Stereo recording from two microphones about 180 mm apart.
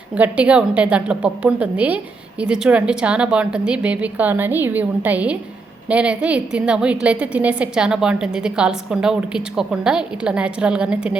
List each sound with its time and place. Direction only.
0.1 s a woman's voice: 5° right (ahead or behind)